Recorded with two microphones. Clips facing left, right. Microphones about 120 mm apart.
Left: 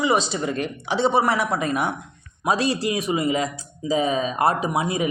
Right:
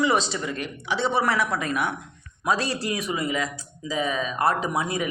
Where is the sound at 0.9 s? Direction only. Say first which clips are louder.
Left 3 dB; 20° left (ahead or behind).